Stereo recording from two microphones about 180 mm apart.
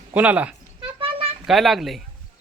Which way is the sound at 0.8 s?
30° right (ahead or behind).